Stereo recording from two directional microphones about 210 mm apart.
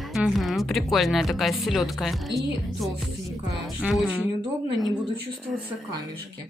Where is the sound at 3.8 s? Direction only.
5° right (ahead or behind).